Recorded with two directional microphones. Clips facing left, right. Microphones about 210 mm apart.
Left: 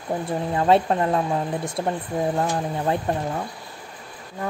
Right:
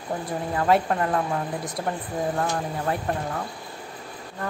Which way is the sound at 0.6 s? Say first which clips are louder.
Left 3 dB; 25° left (ahead or behind).